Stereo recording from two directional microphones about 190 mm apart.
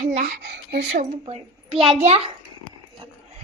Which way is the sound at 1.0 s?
35° right (ahead or behind).